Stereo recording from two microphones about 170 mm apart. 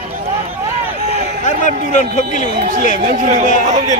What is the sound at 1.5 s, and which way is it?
A man's voice, 45° left (ahead or behind).